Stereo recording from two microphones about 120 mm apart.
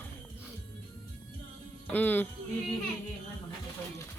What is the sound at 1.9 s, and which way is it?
Speech, 15° left (ahead or behind).